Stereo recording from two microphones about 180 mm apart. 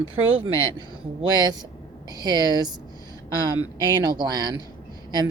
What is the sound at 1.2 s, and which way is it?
A woman's voice, 25° right (ahead or behind).